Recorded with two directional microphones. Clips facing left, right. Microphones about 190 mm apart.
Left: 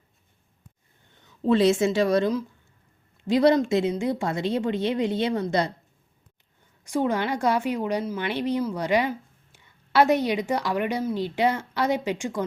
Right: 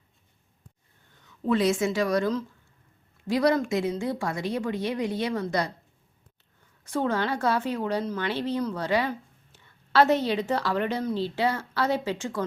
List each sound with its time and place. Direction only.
1.2 s speech: 30° left (ahead or behind)
6.8 s a woman's voice: 15° left (ahead or behind)